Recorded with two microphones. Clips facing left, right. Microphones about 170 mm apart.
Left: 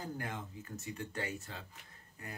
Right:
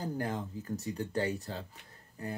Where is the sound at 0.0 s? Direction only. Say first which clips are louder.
Right 7 dB; 35° right (ahead or behind).